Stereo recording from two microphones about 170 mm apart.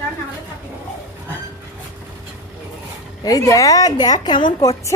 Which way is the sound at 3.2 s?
20° left (ahead or behind).